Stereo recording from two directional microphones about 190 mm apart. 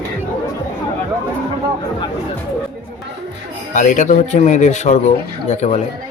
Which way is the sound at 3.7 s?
40° left (ahead or behind).